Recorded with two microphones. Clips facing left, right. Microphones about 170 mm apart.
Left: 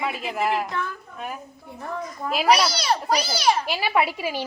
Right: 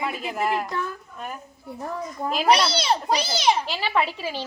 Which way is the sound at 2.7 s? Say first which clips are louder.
Even; 25° right (ahead or behind).